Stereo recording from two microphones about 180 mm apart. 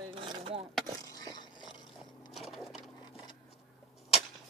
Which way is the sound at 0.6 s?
Centre (ahead or behind).